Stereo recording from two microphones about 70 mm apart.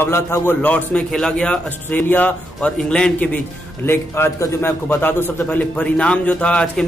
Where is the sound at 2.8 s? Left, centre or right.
Centre.